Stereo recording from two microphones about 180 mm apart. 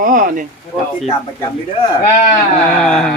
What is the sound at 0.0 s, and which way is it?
Speech, 45° right (ahead or behind).